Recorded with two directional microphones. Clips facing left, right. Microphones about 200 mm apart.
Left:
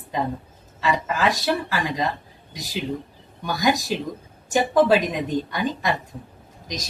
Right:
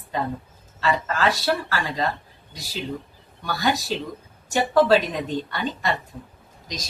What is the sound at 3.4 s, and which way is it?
A woman's voice, 15° left (ahead or behind).